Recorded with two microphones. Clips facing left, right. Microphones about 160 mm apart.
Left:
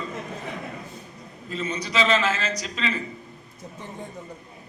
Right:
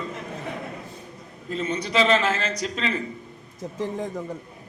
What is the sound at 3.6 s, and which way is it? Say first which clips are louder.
Speech: right 9 dB; 90° right.